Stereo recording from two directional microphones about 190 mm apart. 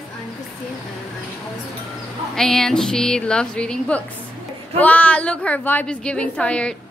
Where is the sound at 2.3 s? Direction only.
Centre (ahead or behind).